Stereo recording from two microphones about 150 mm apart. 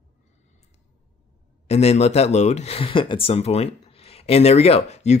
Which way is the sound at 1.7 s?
45° left (ahead or behind).